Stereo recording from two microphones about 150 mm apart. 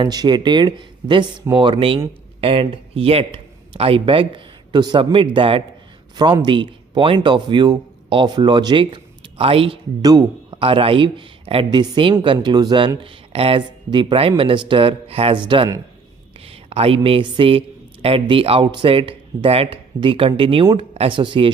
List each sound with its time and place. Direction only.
0.0 s a man's voice: 30° right (ahead or behind)
10.0 s a man's voice: 25° right (ahead or behind)
10.6 s speech: 40° right (ahead or behind)